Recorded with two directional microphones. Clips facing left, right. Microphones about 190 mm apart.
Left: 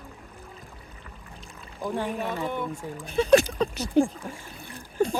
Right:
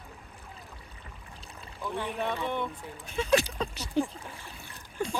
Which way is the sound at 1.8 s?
45° left (ahead or behind).